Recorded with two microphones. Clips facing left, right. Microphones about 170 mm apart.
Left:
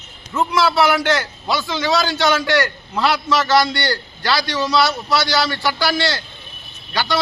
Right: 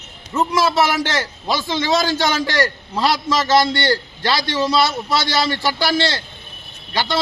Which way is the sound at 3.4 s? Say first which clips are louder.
Right 4 dB; 25° right (ahead or behind).